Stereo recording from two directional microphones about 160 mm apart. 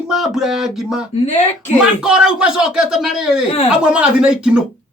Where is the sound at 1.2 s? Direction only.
45° left (ahead or behind).